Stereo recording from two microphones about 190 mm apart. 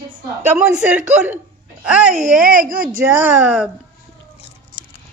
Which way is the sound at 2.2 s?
45° right (ahead or behind).